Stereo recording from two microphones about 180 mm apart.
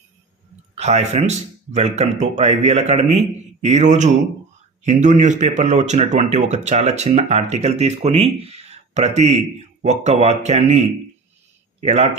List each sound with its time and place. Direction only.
0.8 s speech: 35° right (ahead or behind)